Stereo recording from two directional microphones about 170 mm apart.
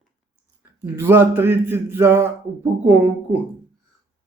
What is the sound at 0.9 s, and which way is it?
Speech, 15° right (ahead or behind).